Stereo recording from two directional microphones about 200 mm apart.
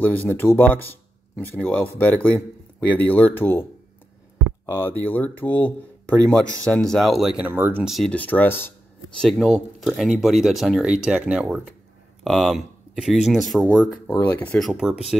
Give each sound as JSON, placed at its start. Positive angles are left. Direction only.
{"t": 0.0, "sound": "speech", "side_deg": 10}
{"t": 4.6, "sound": "speech", "side_deg": 10}